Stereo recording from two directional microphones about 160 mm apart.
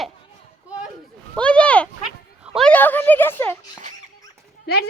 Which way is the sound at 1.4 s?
5° left (ahead or behind).